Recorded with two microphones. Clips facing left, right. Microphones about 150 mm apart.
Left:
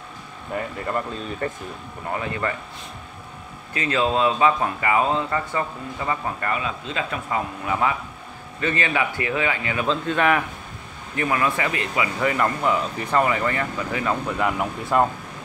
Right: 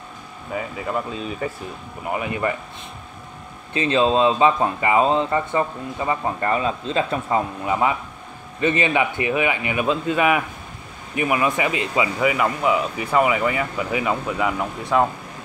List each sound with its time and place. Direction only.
0.5 s speech: 5° right (ahead or behind)
2.0 s speech: 15° right (ahead or behind)
3.7 s speech: 25° right (ahead or behind)
12.2 s speech: 10° right (ahead or behind)